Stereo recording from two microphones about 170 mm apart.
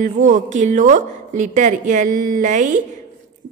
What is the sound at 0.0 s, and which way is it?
A woman's voice, 50° right (ahead or behind).